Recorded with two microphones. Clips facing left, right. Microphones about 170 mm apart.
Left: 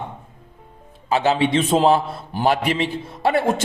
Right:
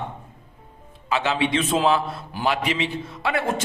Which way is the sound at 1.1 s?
35° left (ahead or behind).